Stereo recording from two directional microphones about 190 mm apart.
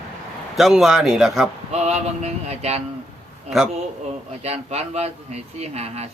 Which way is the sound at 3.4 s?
Centre (ahead or behind).